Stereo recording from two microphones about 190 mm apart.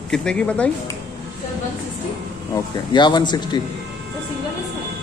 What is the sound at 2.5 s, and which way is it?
Speech, 25° left (ahead or behind).